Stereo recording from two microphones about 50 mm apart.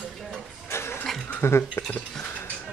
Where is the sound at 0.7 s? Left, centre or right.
Left.